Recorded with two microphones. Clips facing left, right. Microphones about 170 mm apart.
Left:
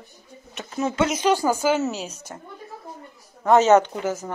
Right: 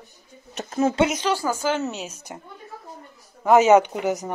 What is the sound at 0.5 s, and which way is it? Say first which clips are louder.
Speech: right 4 dB; 45° right (ahead or behind).